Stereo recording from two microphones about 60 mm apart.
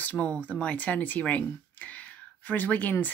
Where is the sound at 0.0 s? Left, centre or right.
Left.